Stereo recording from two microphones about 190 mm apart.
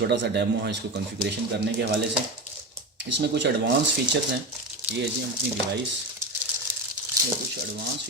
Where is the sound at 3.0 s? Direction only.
70° right (ahead or behind).